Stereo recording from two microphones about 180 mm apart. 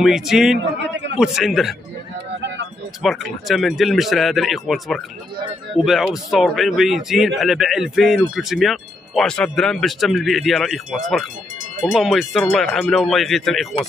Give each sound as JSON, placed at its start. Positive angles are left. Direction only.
{"t": 0.0, "sound": "a man's voice", "side_deg": 0}
{"t": 0.6, "sound": "a man's voice", "side_deg": -90}
{"t": 1.2, "sound": "a man's voice", "side_deg": 0}
{"t": 3.0, "sound": "a man's voice", "side_deg": 0}